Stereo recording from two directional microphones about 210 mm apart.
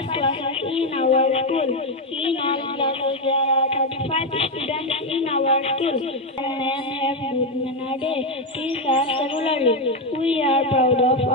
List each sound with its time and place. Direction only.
0.1 s a sound: 25° left (ahead or behind)
5.1 s music: 30° left (ahead or behind)
8.6 s a woman's voice: 25° left (ahead or behind)